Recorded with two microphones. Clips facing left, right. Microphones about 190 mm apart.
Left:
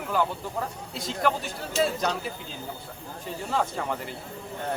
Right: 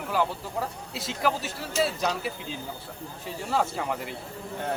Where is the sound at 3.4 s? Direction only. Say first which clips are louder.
Right 1 dB; 5° right (ahead or behind).